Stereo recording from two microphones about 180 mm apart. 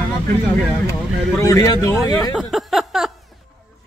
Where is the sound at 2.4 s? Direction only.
Centre (ahead or behind).